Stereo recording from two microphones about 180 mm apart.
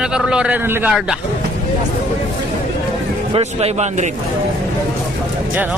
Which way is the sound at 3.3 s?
35° right (ahead or behind).